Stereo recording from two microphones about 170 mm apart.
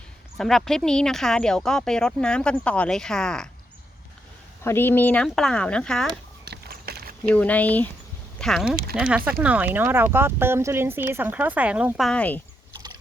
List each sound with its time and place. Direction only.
0.3 s speech: centre (ahead or behind)
4.6 s speech: 15° left (ahead or behind)
6.4 s a sound: 70° right (ahead or behind)
7.3 s speech: 10° left (ahead or behind)